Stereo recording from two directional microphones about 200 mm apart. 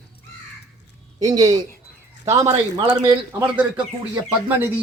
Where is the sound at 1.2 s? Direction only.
20° right (ahead or behind).